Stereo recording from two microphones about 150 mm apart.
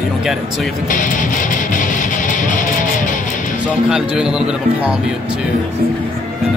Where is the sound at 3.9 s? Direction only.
5° right (ahead or behind).